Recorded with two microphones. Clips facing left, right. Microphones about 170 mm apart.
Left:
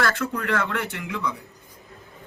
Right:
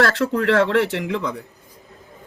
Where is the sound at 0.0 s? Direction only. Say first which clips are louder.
Right 7 dB; 70° right (ahead or behind).